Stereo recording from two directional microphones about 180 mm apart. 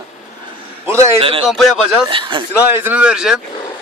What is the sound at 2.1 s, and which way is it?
Speech, 25° right (ahead or behind).